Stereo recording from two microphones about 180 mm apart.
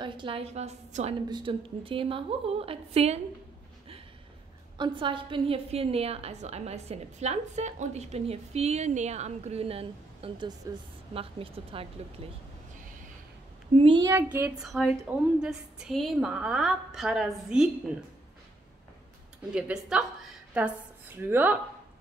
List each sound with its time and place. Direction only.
0.0 s a woman's voice: 30° right (ahead or behind)
4.7 s a woman's voice: 25° right (ahead or behind)
13.7 s a child's voice: 30° right (ahead or behind)
14.0 s a woman's voice: 10° right (ahead or behind)
19.5 s a woman's voice: 5° right (ahead or behind)